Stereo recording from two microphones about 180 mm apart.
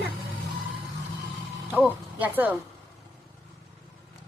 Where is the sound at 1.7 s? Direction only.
10° right (ahead or behind).